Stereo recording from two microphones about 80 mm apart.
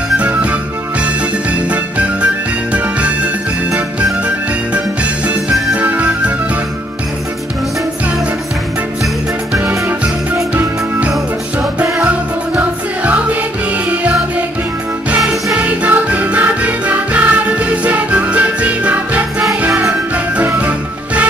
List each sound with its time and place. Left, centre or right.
0.2 s music: centre
2.7 s music: centre
5.8 s music: centre
10.5 s music: centre
12.5 s music: centre
15.5 s music: centre
20.3 s music: centre